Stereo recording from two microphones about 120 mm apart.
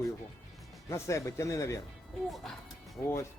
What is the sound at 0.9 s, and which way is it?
Speech, 25° left (ahead or behind).